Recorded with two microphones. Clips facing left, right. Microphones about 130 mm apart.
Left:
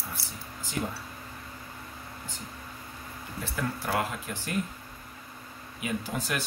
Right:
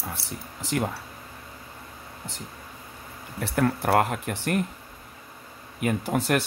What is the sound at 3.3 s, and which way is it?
Speech, 65° right (ahead or behind).